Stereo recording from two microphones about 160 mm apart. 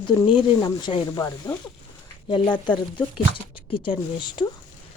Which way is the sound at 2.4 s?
10° left (ahead or behind).